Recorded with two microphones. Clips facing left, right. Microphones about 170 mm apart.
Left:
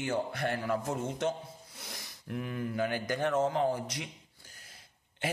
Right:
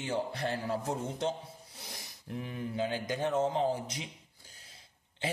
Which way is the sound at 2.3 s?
25° right (ahead or behind).